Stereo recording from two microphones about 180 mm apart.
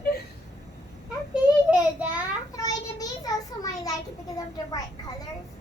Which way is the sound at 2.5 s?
20° left (ahead or behind).